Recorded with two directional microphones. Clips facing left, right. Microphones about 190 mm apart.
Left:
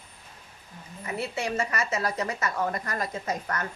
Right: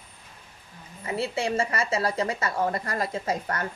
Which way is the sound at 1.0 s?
30° right (ahead or behind).